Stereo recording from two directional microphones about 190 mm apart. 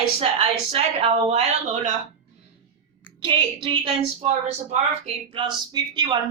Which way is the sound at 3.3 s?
25° right (ahead or behind).